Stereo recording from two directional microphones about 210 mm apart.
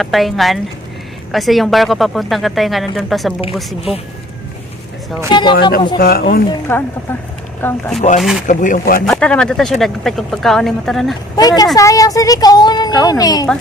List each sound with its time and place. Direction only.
0.0 s speech: centre (ahead or behind)
5.3 s speech: 20° left (ahead or behind)
6.0 s speech: 45° left (ahead or behind)
6.7 s speech: 10° left (ahead or behind)
8.4 s speech: 40° left (ahead or behind)
9.0 s speech: 5° left (ahead or behind)
11.3 s speech: 20° left (ahead or behind)